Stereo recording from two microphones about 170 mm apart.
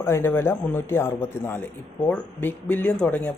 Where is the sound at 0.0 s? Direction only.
15° left (ahead or behind).